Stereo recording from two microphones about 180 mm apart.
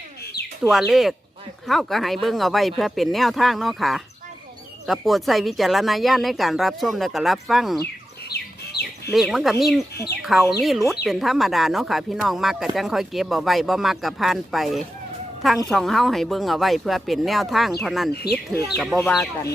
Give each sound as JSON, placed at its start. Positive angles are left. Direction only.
{"t": 0.4, "sound": "bird", "side_deg": 60}
{"t": 0.7, "sound": "speech", "side_deg": 0}
{"t": 8.3, "sound": "chicken", "side_deg": 65}
{"t": 9.1, "sound": "speech", "side_deg": 0}
{"t": 9.9, "sound": "speech", "side_deg": 60}
{"t": 10.2, "sound": "speech", "side_deg": 0}
{"t": 18.1, "sound": "speech", "side_deg": 65}
{"t": 18.8, "sound": "speech", "side_deg": 0}